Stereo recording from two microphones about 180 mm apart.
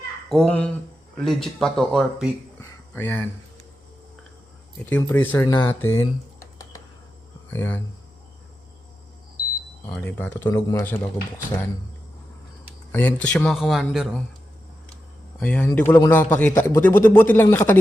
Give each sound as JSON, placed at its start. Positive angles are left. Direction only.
{"t": 0.3, "sound": "a man's voice", "side_deg": 5}
{"t": 2.6, "sound": "a sound", "side_deg": 10}
{"t": 4.9, "sound": "a man's voice", "side_deg": 10}
{"t": 9.9, "sound": "a man's voice", "side_deg": 5}
{"t": 12.9, "sound": "speech", "side_deg": 10}
{"t": 15.4, "sound": "a man's voice", "side_deg": 5}